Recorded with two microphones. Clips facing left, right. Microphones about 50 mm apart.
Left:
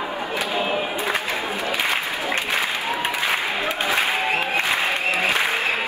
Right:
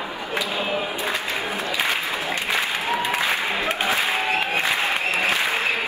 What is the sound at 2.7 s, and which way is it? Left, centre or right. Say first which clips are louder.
Applause: right 1 dB; right.